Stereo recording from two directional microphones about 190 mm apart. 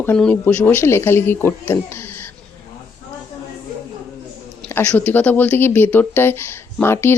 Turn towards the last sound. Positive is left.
turn(degrees=10)  # may be behind; listen again after turning